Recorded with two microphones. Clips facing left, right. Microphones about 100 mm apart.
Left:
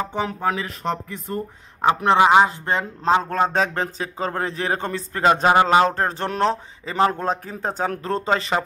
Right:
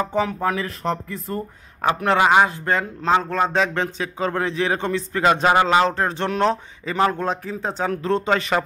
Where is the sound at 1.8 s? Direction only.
25° left (ahead or behind).